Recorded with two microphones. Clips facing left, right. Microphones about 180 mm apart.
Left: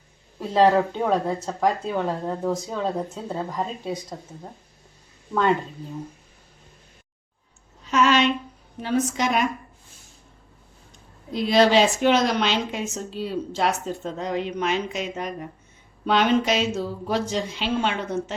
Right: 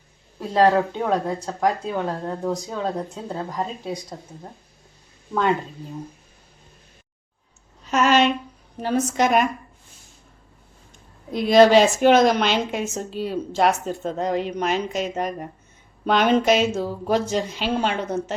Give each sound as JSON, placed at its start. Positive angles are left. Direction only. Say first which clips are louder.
{"t": 0.3, "sound": "speech", "louder": "even", "side_deg": 0}
{"t": 7.9, "sound": "a sound", "louder": "right 2 dB", "side_deg": -45}
{"t": 8.8, "sound": "a woman's voice", "louder": "right 3 dB", "side_deg": -45}
{"t": 11.3, "sound": "a woman's voice", "louder": "right 4 dB", "side_deg": -50}